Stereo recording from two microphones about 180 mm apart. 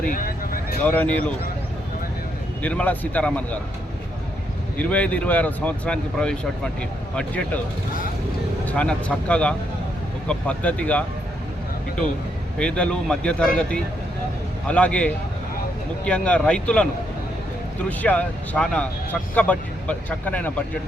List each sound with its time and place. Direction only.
0.1 s vehicle: 50° left (ahead or behind)
0.9 s speech: 10° left (ahead or behind)
2.6 s speech: 10° left (ahead or behind)
4.8 s speech: 5° left (ahead or behind)
8.6 s speech: 5° left (ahead or behind)
12.5 s speech: 5° left (ahead or behind)